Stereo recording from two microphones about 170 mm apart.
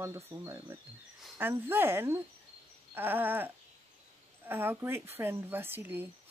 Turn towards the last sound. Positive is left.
turn(degrees=-10)  # may be behind; listen again after turning